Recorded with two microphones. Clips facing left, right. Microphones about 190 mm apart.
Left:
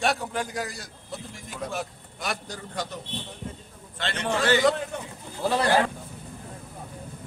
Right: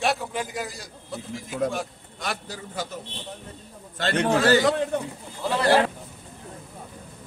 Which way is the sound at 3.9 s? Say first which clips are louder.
Right 6 dB; 45° right (ahead or behind).